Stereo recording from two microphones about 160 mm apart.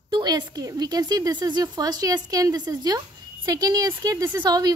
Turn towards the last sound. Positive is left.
turn(degrees=-25)  # may be behind; listen again after turning